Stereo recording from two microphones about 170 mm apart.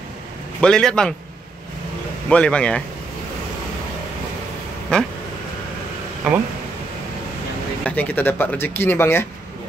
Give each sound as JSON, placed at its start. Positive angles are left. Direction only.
{"t": 0.6, "sound": "a man's voice", "side_deg": 5}
{"t": 2.2, "sound": "speech", "side_deg": 5}
{"t": 4.9, "sound": "a man's voice", "side_deg": 5}
{"t": 7.8, "sound": "speech", "side_deg": 10}